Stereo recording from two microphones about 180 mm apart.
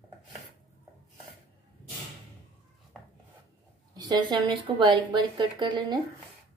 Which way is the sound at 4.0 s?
25° right (ahead or behind).